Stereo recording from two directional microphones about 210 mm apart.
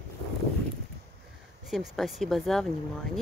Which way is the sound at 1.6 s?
Centre (ahead or behind).